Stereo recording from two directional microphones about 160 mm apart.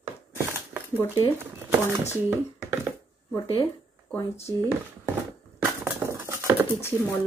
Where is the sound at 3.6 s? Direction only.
20° left (ahead or behind).